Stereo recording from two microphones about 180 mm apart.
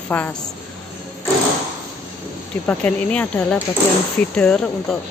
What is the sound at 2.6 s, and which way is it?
Speech, 10° left (ahead or behind).